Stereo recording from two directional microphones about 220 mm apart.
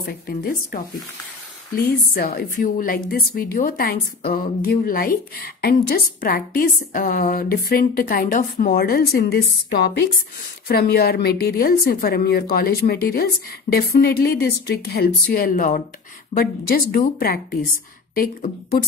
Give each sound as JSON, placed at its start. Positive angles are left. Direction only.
{"t": 0.1, "sound": "a woman's voice", "side_deg": 40}
{"t": 1.8, "sound": "a woman's voice", "side_deg": 40}
{"t": 18.8, "sound": "speech", "side_deg": 45}